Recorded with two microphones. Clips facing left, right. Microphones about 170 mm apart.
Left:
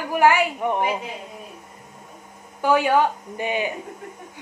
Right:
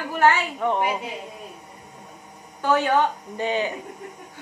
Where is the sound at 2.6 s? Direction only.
10° left (ahead or behind).